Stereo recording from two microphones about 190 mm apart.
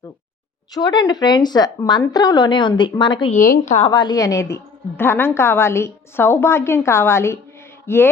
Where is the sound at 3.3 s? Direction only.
40° left (ahead or behind).